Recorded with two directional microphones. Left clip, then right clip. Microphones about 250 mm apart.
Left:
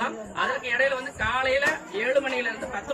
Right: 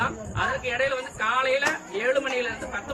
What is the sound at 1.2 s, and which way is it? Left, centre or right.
Speech, centre.